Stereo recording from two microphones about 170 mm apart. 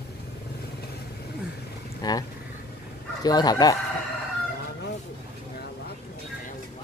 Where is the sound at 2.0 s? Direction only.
25° left (ahead or behind).